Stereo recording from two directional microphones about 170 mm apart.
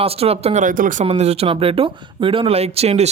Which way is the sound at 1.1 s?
35° right (ahead or behind).